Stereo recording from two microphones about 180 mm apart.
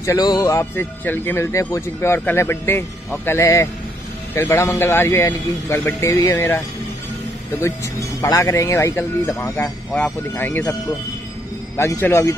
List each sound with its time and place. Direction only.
0.0 s speech: 20° left (ahead or behind)
7.6 s speech: 15° left (ahead or behind)